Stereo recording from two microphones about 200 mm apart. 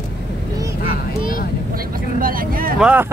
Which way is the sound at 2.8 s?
10° right (ahead or behind).